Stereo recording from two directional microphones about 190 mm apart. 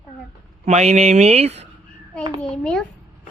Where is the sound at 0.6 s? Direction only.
35° right (ahead or behind).